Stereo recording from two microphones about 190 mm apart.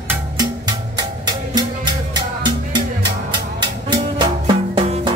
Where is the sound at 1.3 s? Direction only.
20° right (ahead or behind).